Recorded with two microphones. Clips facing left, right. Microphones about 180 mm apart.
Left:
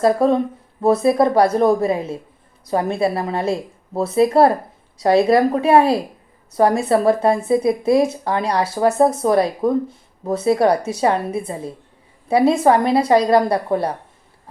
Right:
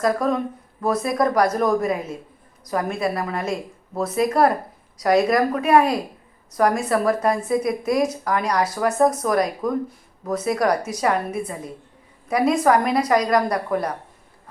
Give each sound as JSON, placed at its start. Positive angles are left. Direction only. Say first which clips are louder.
{"t": 0.0, "sound": "speech", "louder": "left 5 dB", "side_deg": 30}